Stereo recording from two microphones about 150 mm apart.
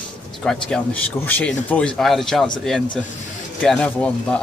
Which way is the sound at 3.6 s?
5° left (ahead or behind).